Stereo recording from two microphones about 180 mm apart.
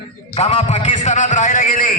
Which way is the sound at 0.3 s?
35° left (ahead or behind).